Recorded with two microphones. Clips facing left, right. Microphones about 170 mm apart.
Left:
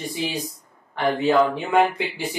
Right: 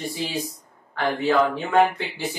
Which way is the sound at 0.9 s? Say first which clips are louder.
Left 2 dB; 20° left (ahead or behind).